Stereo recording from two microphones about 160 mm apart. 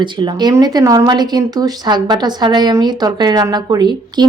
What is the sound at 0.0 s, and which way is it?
Speech, 25° right (ahead or behind).